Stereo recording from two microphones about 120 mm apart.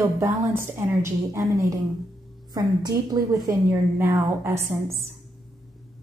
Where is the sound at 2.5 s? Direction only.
35° right (ahead or behind).